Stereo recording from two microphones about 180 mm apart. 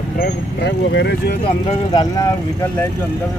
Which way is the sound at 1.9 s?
20° left (ahead or behind).